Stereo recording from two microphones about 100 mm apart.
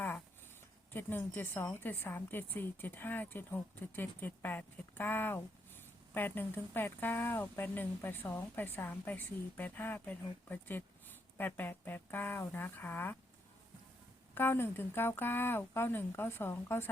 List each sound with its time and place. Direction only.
0.9 s a woman's voice: 20° left (ahead or behind)
14.3 s a woman's voice: 20° left (ahead or behind)